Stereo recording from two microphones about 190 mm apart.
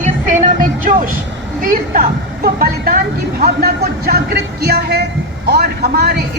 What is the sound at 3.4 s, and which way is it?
Music, 50° right (ahead or behind).